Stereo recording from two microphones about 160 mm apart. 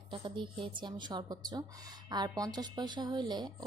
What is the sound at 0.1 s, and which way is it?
Speech, 30° right (ahead or behind).